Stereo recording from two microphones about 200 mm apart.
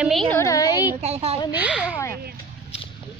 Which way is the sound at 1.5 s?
5° right (ahead or behind).